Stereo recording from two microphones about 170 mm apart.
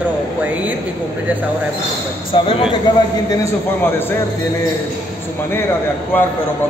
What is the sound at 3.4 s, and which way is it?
Speech, 10° left (ahead or behind).